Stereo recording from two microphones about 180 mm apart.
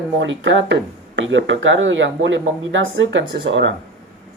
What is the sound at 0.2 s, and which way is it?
Speech, 90° right.